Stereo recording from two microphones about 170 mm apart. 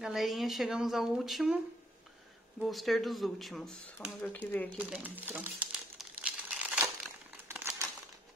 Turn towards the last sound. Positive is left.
turn(degrees=-15)  # may be behind; listen again after turning